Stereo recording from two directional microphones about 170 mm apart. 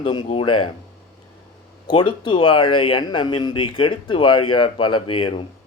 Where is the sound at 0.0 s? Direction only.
25° left (ahead or behind).